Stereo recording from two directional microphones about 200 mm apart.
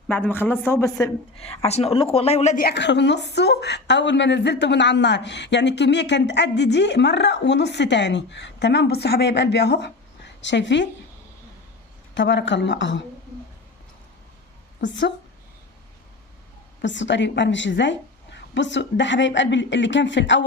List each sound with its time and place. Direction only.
0.1 s speech: 10° left (ahead or behind)
1.4 s speech: 30° left (ahead or behind)
2.6 s a woman's voice: 60° left (ahead or behind)
12.1 s a woman's voice: 65° left (ahead or behind)
16.8 s a woman's voice: 65° left (ahead or behind)